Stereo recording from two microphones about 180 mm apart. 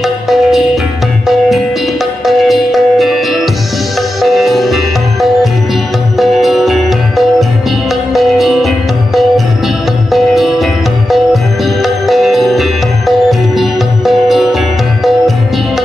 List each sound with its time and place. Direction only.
0.0 s music: centre (ahead or behind)
2.2 s music: centre (ahead or behind)
6.1 s music: centre (ahead or behind)